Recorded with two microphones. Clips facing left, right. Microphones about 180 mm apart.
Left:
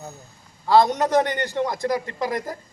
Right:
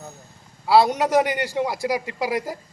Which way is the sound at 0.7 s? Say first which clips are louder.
Even; 10° right (ahead or behind).